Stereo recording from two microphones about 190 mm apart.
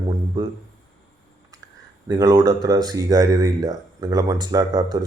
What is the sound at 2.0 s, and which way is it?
Speech, 20° right (ahead or behind).